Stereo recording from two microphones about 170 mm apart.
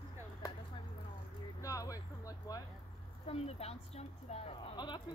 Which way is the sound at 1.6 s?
20° left (ahead or behind).